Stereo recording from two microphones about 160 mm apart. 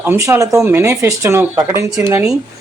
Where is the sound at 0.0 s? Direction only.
15° right (ahead or behind).